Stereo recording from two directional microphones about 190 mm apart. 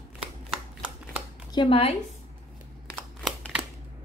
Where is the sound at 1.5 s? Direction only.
25° left (ahead or behind).